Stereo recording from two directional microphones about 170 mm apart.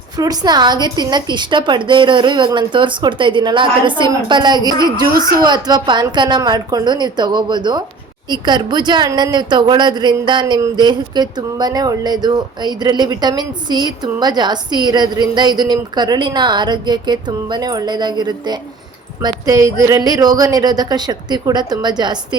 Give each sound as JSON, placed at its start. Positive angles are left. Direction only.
{"t": 0.2, "sound": "a woman's voice", "side_deg": -25}